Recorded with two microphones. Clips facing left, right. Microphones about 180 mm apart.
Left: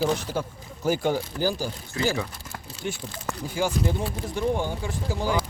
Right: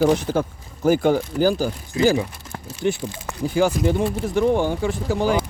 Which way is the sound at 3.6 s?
85° right.